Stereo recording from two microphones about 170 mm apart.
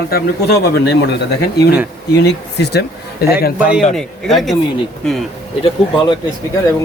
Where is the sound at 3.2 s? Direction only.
70° left (ahead or behind).